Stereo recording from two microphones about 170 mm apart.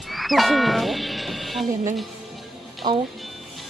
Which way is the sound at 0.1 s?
Centre (ahead or behind).